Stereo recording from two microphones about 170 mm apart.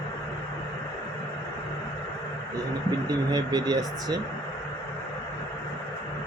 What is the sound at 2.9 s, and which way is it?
Speech, 25° right (ahead or behind).